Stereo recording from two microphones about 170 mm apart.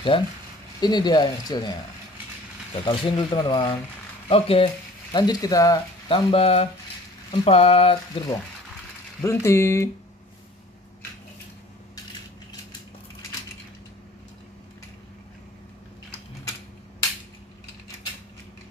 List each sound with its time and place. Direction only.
0.1 s speech: 30° left (ahead or behind)
2.8 s speech: 30° left (ahead or behind)
5.1 s speech: 25° left (ahead or behind)
9.2 s speech: 15° left (ahead or behind)